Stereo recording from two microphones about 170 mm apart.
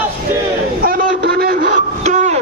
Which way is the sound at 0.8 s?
65° right (ahead or behind).